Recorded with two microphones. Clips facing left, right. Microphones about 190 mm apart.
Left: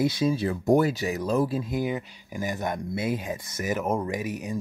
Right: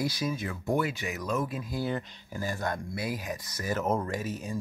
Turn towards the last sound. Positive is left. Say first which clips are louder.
# left 3 dB
turn(degrees=15)  # may be behind; listen again after turning